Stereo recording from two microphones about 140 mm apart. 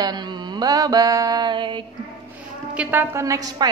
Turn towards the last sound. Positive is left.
turn(degrees=-25)  # may be behind; listen again after turning